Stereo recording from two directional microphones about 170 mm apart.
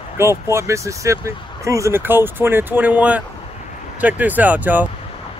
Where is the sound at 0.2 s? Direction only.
15° right (ahead or behind).